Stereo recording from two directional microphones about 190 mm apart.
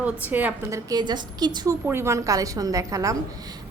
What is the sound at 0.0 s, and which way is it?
A woman's voice, 10° right (ahead or behind).